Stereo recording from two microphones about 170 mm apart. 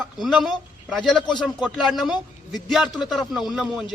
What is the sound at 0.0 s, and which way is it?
A man's voice, centre (ahead or behind).